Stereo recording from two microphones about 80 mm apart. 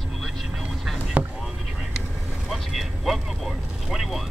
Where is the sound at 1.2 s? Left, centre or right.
Centre.